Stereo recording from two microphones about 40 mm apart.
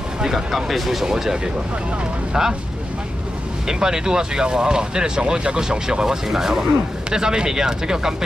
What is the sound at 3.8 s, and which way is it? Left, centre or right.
Speech, centre.